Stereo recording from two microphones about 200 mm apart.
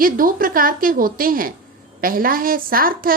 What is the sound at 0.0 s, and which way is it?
A woman's voice, 45° right (ahead or behind).